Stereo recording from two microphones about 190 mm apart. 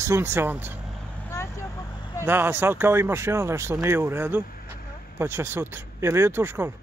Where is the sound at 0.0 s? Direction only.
15° right (ahead or behind).